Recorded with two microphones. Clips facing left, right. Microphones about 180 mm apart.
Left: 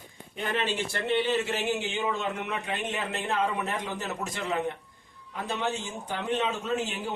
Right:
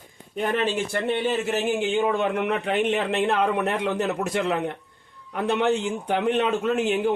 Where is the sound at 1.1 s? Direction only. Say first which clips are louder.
Even; 50° right (ahead or behind).